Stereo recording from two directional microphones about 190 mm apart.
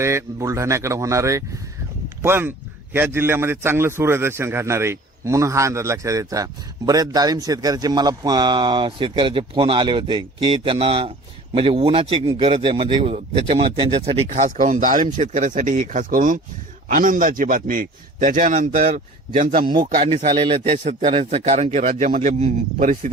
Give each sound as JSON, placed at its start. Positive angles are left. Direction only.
{"t": 0.0, "sound": "a man's voice", "side_deg": -15}
{"t": 14.3, "sound": "a man's voice", "side_deg": -40}
{"t": 20.0, "sound": "a man's voice", "side_deg": -35}